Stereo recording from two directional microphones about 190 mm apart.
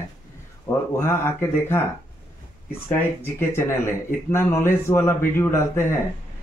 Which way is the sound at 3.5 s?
15° left (ahead or behind).